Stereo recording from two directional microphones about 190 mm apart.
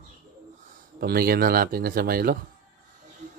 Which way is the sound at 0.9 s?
55° right (ahead or behind).